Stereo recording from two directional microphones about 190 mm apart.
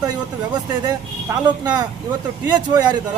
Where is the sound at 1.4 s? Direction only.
20° right (ahead or behind).